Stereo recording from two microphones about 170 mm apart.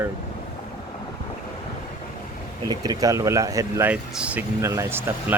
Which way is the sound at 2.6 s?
25° right (ahead or behind).